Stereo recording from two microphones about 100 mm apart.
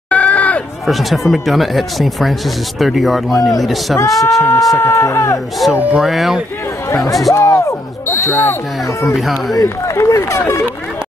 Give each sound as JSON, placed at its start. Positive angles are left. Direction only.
{"t": 0.1, "sound": "a sound", "side_deg": 15}
{"t": 0.8, "sound": "speech", "side_deg": 0}
{"t": 4.4, "sound": "speech", "side_deg": 35}
{"t": 5.7, "sound": "speech", "side_deg": -10}
{"t": 6.9, "sound": "speech", "side_deg": 35}
{"t": 7.3, "sound": "smoke detector", "side_deg": 30}
{"t": 9.2, "sound": "speech", "side_deg": 0}
{"t": 9.6, "sound": "speech", "side_deg": 30}